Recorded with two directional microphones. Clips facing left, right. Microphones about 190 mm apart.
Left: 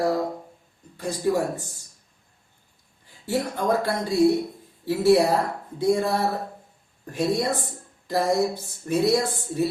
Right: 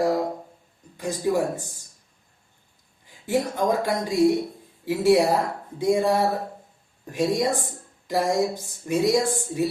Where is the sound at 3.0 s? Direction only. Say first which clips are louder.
Right 2 dB; 15° right (ahead or behind).